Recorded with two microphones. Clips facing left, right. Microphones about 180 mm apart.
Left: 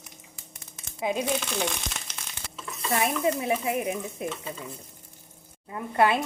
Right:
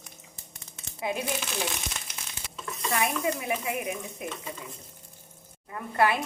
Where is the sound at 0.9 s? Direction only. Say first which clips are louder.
Left 3 dB; 20° left (ahead or behind).